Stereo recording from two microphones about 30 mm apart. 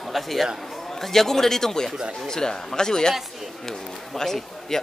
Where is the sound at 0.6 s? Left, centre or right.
Centre.